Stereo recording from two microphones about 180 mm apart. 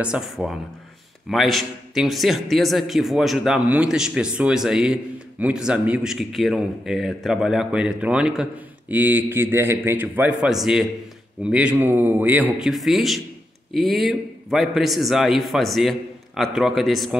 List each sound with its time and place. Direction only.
0.0 s a man's voice: 5° right (ahead or behind)